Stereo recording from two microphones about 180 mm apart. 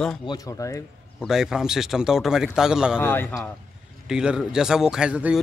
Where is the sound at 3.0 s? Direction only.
10° left (ahead or behind).